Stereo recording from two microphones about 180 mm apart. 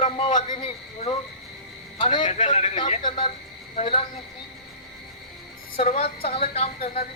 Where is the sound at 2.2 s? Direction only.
40° left (ahead or behind).